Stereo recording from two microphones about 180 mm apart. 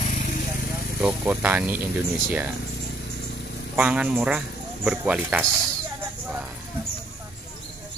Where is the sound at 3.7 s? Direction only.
5° right (ahead or behind).